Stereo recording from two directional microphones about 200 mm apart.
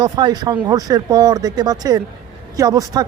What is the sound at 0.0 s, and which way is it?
A man's voice, 20° right (ahead or behind).